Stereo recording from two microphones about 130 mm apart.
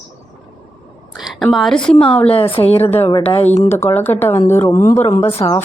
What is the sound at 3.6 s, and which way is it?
Speech, 20° left (ahead or behind).